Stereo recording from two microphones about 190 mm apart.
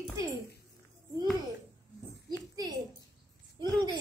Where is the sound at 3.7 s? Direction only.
20° right (ahead or behind).